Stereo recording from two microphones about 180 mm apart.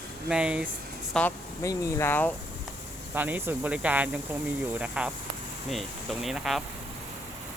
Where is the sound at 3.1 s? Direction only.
10° right (ahead or behind).